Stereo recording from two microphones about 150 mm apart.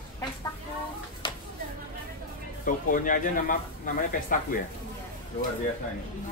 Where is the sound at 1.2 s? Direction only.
30° left (ahead or behind).